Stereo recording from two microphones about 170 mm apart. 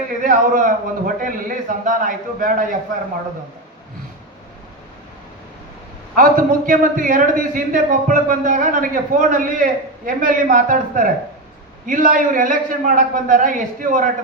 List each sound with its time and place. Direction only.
0.2 s a man's voice: 50° right (ahead or behind)
6.1 s a man's voice: 55° right (ahead or behind)